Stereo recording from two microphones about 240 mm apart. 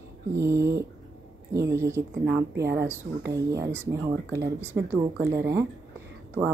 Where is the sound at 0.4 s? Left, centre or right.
Centre.